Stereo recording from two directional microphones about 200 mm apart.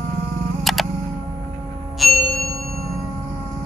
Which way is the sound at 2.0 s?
Centre (ahead or behind).